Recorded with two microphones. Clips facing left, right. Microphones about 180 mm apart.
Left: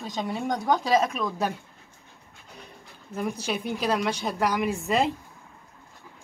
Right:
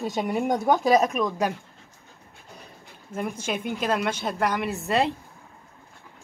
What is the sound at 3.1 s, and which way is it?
Speech, 5° right (ahead or behind).